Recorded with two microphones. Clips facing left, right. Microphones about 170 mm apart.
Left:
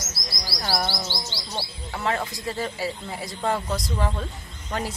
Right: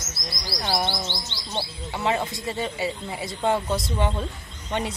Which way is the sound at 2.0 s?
Centre (ahead or behind).